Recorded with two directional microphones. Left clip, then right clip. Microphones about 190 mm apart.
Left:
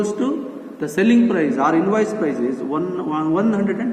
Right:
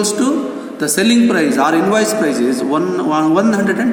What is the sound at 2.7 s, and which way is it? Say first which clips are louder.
Speech: right 7 dB; 65° right (ahead or behind).